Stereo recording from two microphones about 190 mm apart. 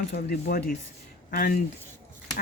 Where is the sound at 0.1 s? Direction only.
55° left (ahead or behind).